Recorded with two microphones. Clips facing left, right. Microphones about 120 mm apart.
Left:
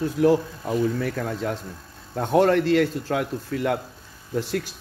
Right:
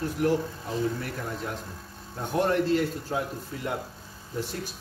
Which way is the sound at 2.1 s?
90° left.